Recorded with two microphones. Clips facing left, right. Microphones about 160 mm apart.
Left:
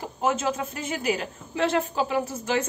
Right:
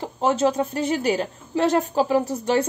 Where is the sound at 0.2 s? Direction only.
35° right (ahead or behind).